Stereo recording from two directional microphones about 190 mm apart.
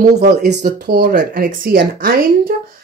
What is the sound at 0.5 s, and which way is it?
Speech, 55° right (ahead or behind).